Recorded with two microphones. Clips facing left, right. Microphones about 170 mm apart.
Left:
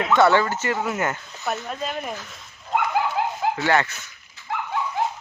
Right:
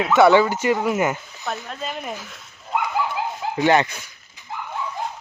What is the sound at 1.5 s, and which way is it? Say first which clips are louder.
Speech: left 2 dB; 5° left (ahead or behind).